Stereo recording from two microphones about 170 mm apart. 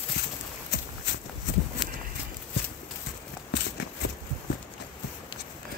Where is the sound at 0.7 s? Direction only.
90° left.